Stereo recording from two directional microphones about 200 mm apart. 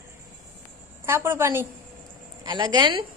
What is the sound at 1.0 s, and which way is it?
Speech, 10° right (ahead or behind).